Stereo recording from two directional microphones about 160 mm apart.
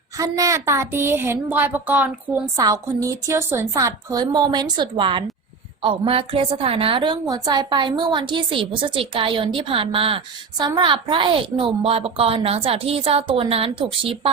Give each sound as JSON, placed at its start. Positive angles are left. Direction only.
{"t": 0.2, "sound": "speech", "side_deg": -20}
{"t": 2.6, "sound": "a woman's voice", "side_deg": -20}